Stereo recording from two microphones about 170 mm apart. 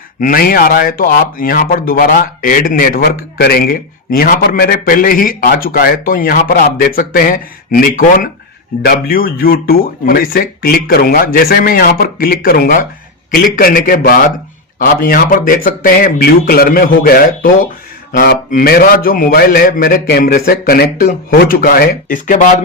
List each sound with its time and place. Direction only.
0.2 s speech: 55° left (ahead or behind)